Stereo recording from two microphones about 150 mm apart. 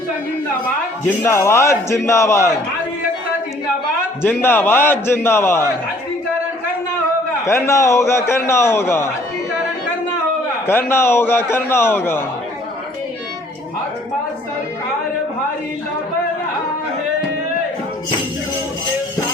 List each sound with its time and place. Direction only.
1.0 s a man's voice: 15° left (ahead or behind)
4.2 s a man's voice: 15° left (ahead or behind)
7.4 s a man's voice: 20° left (ahead or behind)
10.7 s a man's voice: 15° left (ahead or behind)